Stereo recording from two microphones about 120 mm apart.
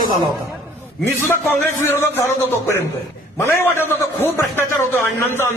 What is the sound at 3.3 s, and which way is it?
A man's voice, 20° left (ahead or behind).